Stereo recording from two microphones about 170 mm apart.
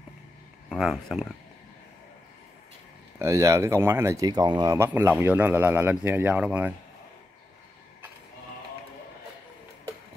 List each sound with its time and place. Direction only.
0.7 s speech: centre (ahead or behind)
3.2 s speech: 15° right (ahead or behind)